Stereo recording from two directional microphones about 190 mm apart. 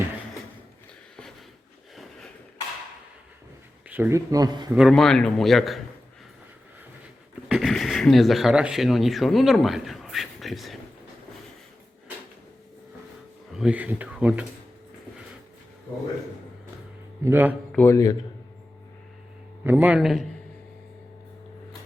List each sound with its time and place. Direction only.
3.8 s speech: 10° right (ahead or behind)
4.7 s a man's voice: centre (ahead or behind)
7.4 s speech: centre (ahead or behind)
13.5 s speech: 5° right (ahead or behind)
17.2 s speech: 10° right (ahead or behind)
17.7 s speech: 10° left (ahead or behind)
19.6 s speech: 10° right (ahead or behind)